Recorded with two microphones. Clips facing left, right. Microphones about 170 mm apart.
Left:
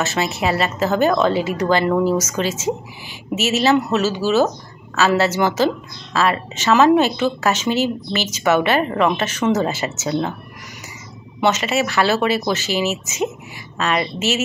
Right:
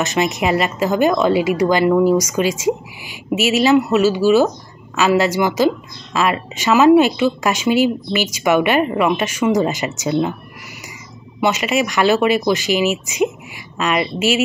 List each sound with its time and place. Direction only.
0.0 s a woman's voice: 15° right (ahead or behind)
11.4 s a woman's voice: 10° right (ahead or behind)